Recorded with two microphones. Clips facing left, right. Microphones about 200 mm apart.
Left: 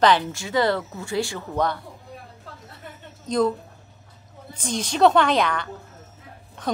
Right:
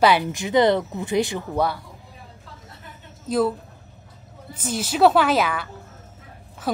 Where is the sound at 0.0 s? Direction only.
15° right (ahead or behind).